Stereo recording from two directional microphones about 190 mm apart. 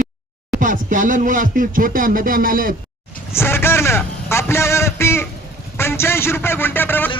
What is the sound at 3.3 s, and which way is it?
A man's voice, 10° left (ahead or behind).